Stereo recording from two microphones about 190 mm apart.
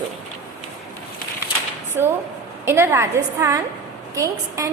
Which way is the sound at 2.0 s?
10° right (ahead or behind).